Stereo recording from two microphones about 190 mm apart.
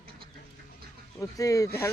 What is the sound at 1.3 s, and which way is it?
Speech, 15° left (ahead or behind).